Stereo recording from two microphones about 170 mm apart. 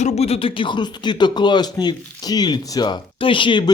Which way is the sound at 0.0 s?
40° left (ahead or behind).